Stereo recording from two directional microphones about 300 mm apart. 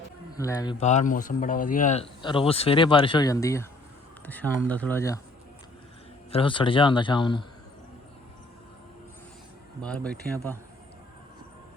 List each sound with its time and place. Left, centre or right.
0.3 s speech: centre
6.3 s speech: centre
9.8 s speech: centre